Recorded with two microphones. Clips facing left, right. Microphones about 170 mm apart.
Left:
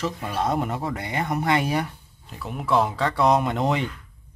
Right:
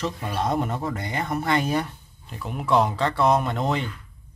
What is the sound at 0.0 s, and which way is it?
Speech, 5° left (ahead or behind).